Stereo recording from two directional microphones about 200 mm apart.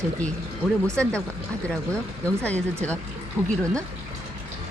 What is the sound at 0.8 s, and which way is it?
Speech, 5° left (ahead or behind).